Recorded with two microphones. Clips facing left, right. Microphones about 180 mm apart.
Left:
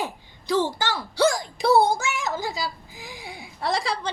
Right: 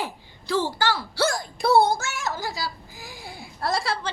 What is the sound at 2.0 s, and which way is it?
A child's voice, 20° left (ahead or behind).